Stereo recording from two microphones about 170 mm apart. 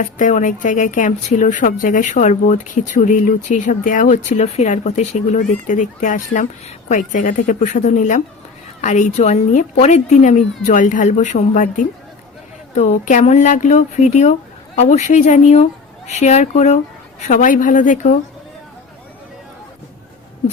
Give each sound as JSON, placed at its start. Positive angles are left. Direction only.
{"t": 0.0, "sound": "speech", "side_deg": 50}
{"t": 4.4, "sound": "speech", "side_deg": 40}